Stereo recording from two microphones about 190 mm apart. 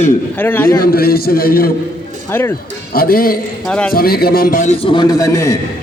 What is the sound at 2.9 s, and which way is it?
Speech, 50° left (ahead or behind).